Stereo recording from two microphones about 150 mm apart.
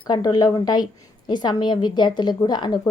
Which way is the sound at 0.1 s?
25° left (ahead or behind).